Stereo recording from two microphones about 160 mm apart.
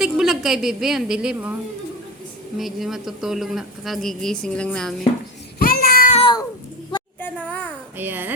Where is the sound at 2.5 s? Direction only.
Centre (ahead or behind).